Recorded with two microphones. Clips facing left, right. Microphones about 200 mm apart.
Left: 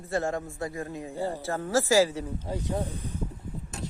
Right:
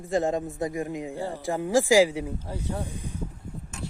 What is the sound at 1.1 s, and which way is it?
Speech, 15° left (ahead or behind).